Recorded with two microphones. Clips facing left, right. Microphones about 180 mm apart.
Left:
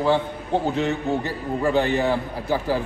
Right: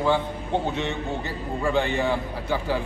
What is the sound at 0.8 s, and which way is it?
A man's voice, 40° left (ahead or behind).